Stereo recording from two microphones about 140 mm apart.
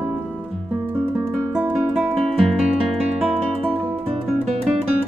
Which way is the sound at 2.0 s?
Centre (ahead or behind).